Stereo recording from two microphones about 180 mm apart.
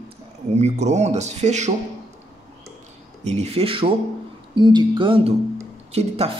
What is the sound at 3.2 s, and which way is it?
Speech, 35° right (ahead or behind).